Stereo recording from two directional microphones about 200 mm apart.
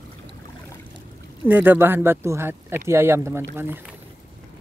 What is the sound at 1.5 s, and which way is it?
Speech, 10° right (ahead or behind).